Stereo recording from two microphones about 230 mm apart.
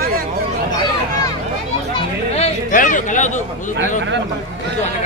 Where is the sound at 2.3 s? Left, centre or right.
Left.